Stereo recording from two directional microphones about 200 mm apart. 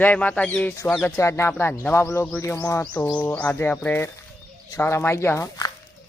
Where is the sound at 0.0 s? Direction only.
5° left (ahead or behind).